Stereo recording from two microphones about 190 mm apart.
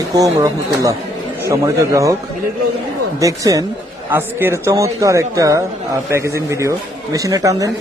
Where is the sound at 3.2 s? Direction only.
20° right (ahead or behind).